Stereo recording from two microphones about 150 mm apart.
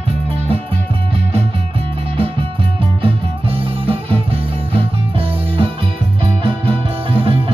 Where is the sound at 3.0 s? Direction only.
40° right (ahead or behind).